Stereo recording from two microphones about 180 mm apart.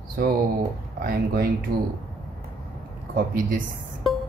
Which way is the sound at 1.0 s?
55° right (ahead or behind).